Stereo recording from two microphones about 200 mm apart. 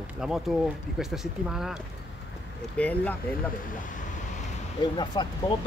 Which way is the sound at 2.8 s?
10° left (ahead or behind).